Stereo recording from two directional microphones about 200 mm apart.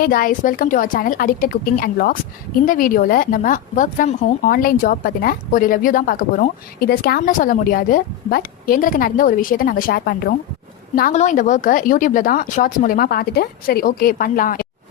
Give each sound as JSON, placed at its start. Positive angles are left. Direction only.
{"t": 0.0, "sound": "speech", "side_deg": 45}
{"t": 7.3, "sound": "speech", "side_deg": 40}